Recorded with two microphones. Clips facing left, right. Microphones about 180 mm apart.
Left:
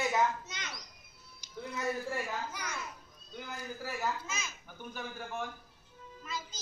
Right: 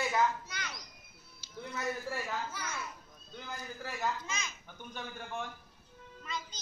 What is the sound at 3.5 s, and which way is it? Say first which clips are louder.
Speech: left 2 dB; 5° left (ahead or behind).